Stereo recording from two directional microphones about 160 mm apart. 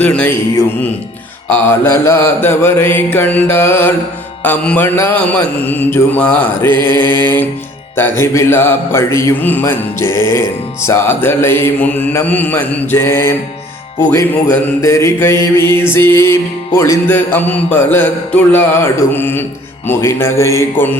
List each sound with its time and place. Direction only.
0.0 s music: 10° left (ahead or behind)
14.8 s music: 20° left (ahead or behind)